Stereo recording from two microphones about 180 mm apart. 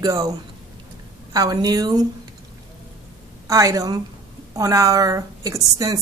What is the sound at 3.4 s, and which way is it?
A woman's voice, 20° right (ahead or behind).